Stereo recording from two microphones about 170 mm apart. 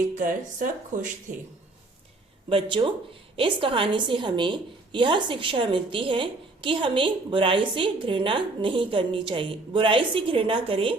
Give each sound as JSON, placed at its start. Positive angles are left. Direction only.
{"t": 0.1, "sound": "speech", "side_deg": -50}
{"t": 2.5, "sound": "a woman's voice", "side_deg": -30}